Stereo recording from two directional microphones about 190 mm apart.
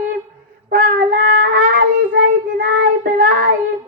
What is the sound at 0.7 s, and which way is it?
Child singing, 45° right (ahead or behind).